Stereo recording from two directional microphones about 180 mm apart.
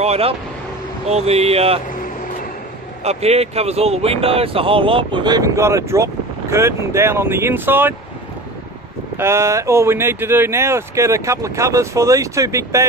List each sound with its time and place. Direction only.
0.0 s speech: 35° right (ahead or behind)
3.0 s speech: 35° right (ahead or behind); by 7.9 s 10° right (ahead or behind)
9.1 s speech: 15° right (ahead or behind)